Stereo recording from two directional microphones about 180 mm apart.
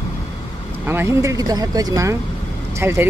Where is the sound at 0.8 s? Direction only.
10° right (ahead or behind).